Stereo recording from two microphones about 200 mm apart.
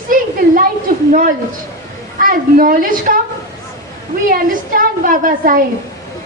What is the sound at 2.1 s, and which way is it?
A woman's voice, 45° right (ahead or behind).